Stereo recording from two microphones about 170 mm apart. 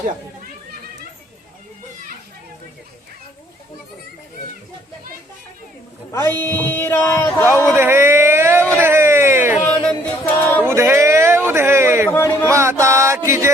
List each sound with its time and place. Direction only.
6.1 s speech: 15° left (ahead or behind)
7.8 s a sound: 15° right (ahead or behind)
9.6 s music: 5° left (ahead or behind)
10.6 s a sound: 10° right (ahead or behind)
12.1 s music: 15° left (ahead or behind)
12.5 s music: 15° right (ahead or behind)